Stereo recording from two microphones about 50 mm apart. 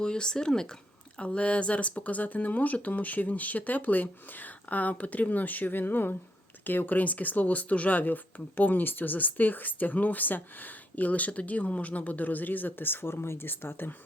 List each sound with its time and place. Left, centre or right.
0.0 s speech: centre; by 13.9 s left